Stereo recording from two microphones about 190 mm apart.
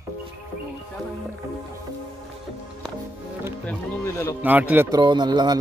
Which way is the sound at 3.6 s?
15° left (ahead or behind).